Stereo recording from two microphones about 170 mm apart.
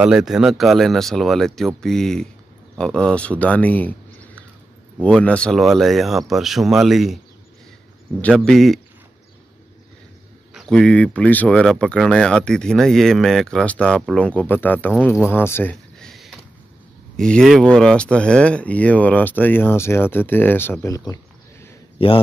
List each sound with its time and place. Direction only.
0.0 s speech: 5° right (ahead or behind)
8.2 s speech: 5° left (ahead or behind)
10.5 s speech: centre (ahead or behind)
15.2 s a sound: 15° left (ahead or behind)
17.2 s speech: 5° left (ahead or behind); by 21.6 s 20° left (ahead or behind)
22.0 s speech: 35° left (ahead or behind)